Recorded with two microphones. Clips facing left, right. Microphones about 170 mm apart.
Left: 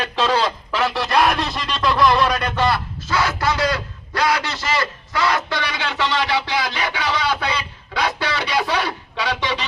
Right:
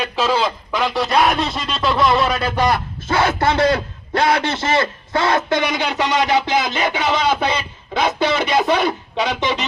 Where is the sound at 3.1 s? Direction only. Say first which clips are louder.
Right 4 dB; 25° right (ahead or behind).